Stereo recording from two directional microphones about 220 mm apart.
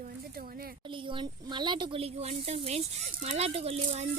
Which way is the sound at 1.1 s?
20° right (ahead or behind).